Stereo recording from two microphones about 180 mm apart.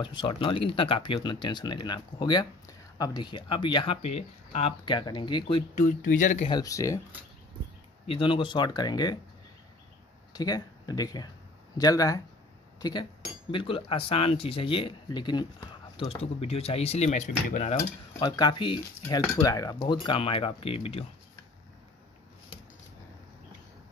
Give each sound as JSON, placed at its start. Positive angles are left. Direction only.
{"t": 0.0, "sound": "speech", "side_deg": 25}
{"t": 5.8, "sound": "speech", "side_deg": 45}
{"t": 6.5, "sound": "speech", "side_deg": 20}
{"t": 8.1, "sound": "speech", "side_deg": 30}
{"t": 10.3, "sound": "speech", "side_deg": 20}
{"t": 13.5, "sound": "speech", "side_deg": 30}
{"t": 18.2, "sound": "speech", "side_deg": 25}